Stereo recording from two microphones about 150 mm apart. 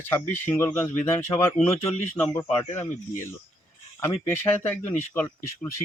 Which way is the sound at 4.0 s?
15° left (ahead or behind).